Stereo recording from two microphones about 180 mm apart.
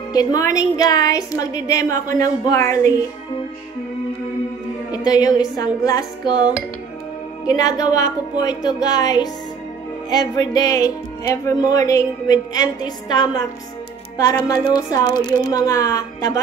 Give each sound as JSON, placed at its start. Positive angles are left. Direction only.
{"t": 0.1, "sound": "a woman's voice", "side_deg": 20}
{"t": 4.9, "sound": "a woman's voice", "side_deg": 20}